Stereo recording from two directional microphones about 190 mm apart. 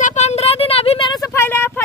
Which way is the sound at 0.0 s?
40° left (ahead or behind).